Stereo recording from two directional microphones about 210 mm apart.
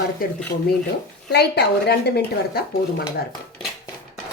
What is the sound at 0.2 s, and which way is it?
Speech, 40° left (ahead or behind).